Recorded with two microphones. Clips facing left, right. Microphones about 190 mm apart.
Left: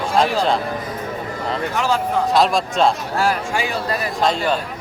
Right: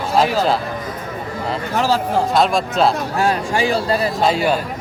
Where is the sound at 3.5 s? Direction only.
30° right (ahead or behind).